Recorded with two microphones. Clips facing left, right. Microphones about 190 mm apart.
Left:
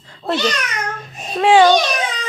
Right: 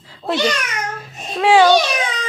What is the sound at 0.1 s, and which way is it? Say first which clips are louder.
A child's voice: right 1 dB; 10° right (ahead or behind).